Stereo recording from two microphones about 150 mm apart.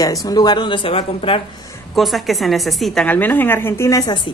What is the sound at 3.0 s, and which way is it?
A woman's voice, 10° left (ahead or behind).